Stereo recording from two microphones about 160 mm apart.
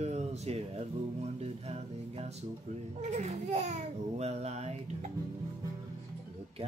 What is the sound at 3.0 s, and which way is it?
Speech, 45° right (ahead or behind).